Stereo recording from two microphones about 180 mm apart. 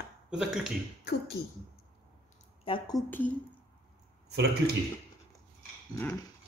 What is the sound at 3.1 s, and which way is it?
Speech, 10° left (ahead or behind).